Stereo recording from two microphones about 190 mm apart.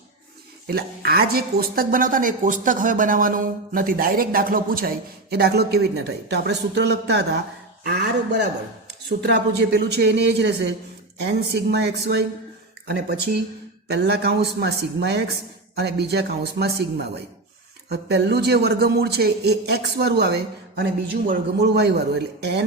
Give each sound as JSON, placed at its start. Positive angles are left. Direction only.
{"t": 0.7, "sound": "a man's voice", "side_deg": -55}